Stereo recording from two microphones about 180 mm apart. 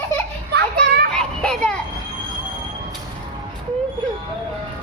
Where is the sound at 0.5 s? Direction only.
65° right (ahead or behind).